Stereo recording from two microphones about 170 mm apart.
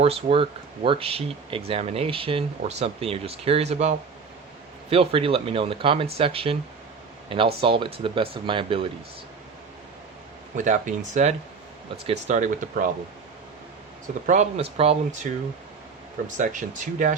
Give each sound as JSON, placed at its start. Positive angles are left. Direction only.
{"t": 0.0, "sound": "speech", "side_deg": -35}
{"t": 10.6, "sound": "speech", "side_deg": -45}
{"t": 14.3, "sound": "speech", "side_deg": -40}